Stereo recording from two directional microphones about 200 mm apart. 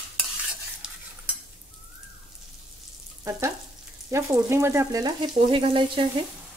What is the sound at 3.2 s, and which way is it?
Frying, 15° right (ahead or behind).